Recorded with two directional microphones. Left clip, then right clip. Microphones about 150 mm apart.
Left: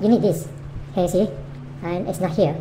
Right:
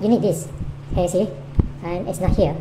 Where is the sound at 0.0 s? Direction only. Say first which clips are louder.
Even; 10° left (ahead or behind).